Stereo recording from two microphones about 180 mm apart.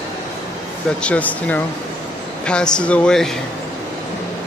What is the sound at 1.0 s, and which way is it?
Speech, 5° left (ahead or behind).